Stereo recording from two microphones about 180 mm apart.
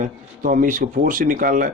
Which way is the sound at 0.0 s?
50° right (ahead or behind).